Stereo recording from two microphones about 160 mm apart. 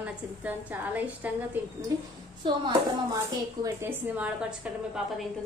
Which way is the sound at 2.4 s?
30° right (ahead or behind).